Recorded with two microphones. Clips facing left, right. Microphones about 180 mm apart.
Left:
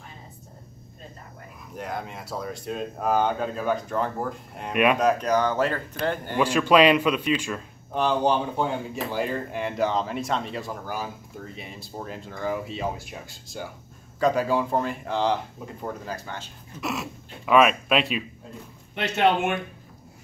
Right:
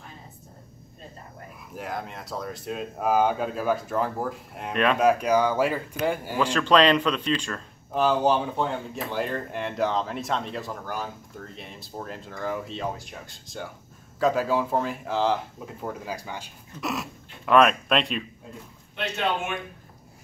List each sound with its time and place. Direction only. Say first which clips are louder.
1.7 s speech: left 1 dB; centre (ahead or behind)
6.4 s speech: left 2 dB; 10° left (ahead or behind)
7.9 s speech: right 1 dB; 5° right (ahead or behind)
16.8 s speech: even; centre (ahead or behind)
18.9 s a man's voice: left 6 dB; 75° left (ahead or behind)